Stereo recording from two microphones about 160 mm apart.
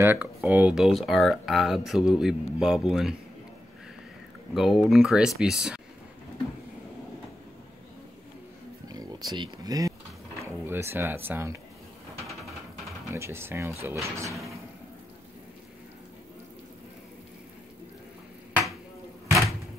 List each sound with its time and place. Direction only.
0.0 s speech: 10° right (ahead or behind)
4.6 s speech: centre (ahead or behind)
8.8 s a sound: 25° right (ahead or behind)
10.4 s speech: 15° right (ahead or behind)
13.1 s speech: 15° right (ahead or behind)